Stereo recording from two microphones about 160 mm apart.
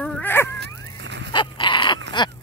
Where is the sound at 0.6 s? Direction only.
90° right.